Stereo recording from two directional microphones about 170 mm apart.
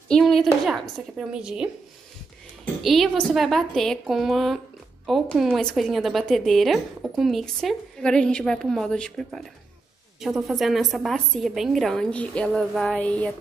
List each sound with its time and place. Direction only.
0.1 s a woman's voice: centre (ahead or behind)